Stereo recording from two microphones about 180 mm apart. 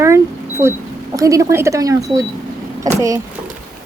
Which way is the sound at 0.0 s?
15° right (ahead or behind).